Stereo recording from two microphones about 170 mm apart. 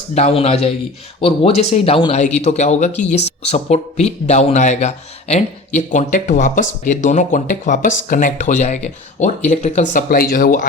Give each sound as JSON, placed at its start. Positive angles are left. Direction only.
{"t": 0.1, "sound": "a man's voice", "side_deg": 40}